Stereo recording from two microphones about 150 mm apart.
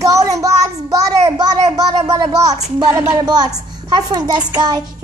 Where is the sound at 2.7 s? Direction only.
25° right (ahead or behind).